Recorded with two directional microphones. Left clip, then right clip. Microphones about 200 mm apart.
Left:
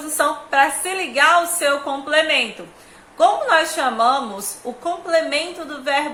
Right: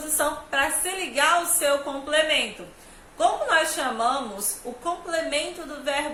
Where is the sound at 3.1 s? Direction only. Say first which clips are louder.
Left 6 dB; 15° left (ahead or behind).